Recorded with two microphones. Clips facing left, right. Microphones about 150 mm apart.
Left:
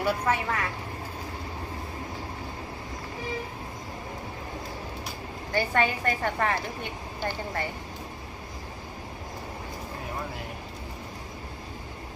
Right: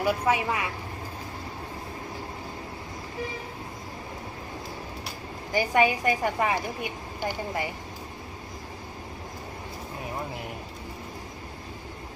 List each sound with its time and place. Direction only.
0.0 s a woman's voice: 10° right (ahead or behind)
5.5 s a woman's voice: 10° right (ahead or behind)